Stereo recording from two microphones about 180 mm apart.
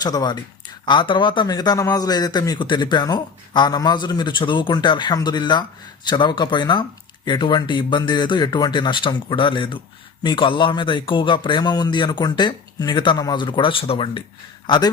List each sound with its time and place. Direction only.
0.0 s a man's voice: 20° left (ahead or behind)